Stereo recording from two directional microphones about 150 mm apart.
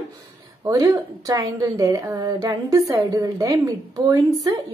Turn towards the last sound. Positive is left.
turn(degrees=-25)  # may be behind; listen again after turning